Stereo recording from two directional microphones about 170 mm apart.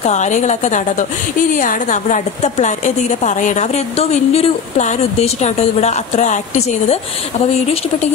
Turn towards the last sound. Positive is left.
turn(degrees=40)  # may be behind; listen again after turning